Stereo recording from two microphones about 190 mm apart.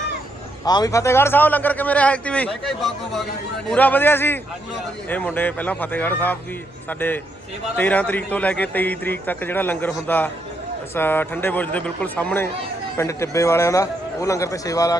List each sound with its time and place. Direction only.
0.6 s a man's voice: 20° left (ahead or behind)
7.8 s a man's voice: 10° left (ahead or behind)